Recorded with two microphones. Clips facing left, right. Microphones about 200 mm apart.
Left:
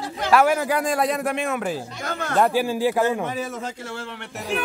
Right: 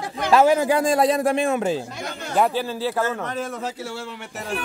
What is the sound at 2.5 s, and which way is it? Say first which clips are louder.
Speech: left 4 dB; 10° left (ahead or behind).